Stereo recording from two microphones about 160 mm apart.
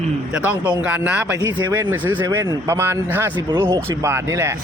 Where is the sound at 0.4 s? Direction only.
10° right (ahead or behind).